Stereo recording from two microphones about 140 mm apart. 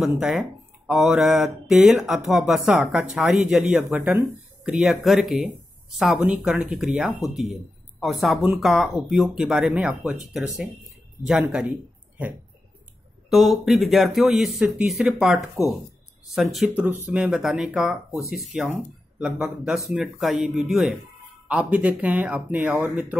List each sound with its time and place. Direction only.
0.0 s speech: 5° right (ahead or behind)
13.3 s speech: centre (ahead or behind)
16.8 s speech: 15° right (ahead or behind)
17.2 s speech: 5° right (ahead or behind)